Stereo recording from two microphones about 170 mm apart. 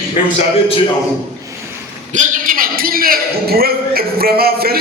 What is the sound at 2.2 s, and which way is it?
A man's voice, 55° right (ahead or behind).